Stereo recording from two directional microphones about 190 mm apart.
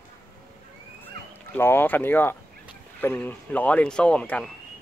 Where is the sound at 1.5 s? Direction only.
10° left (ahead or behind).